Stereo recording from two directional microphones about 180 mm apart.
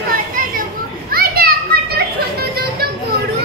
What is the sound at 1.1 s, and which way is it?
Children playing, 55° right (ahead or behind).